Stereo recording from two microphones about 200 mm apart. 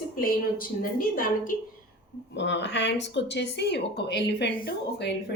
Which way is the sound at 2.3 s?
60° left (ahead or behind).